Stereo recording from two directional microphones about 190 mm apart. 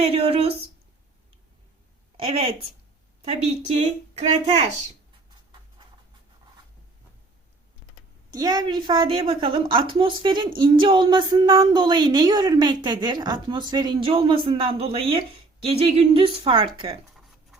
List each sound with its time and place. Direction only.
0.0 s speech: 30° right (ahead or behind)
2.1 s speech: 30° right (ahead or behind)
8.3 s speech: 20° right (ahead or behind)